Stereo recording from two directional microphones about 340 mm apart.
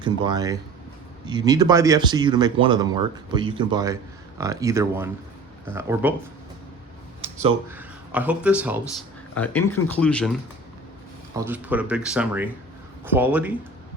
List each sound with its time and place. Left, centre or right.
0.0 s speech: centre
7.2 s a sound: centre
7.7 s speech: centre
11.3 s speech: centre